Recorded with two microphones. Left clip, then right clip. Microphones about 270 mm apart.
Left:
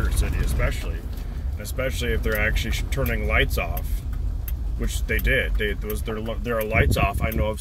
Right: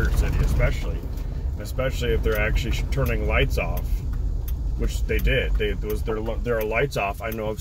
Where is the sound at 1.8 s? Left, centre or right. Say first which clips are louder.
Right 1 dB; left.